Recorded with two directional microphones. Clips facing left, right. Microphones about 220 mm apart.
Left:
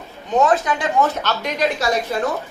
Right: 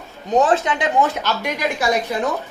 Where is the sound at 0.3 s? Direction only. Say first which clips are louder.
Even; 30° right (ahead or behind).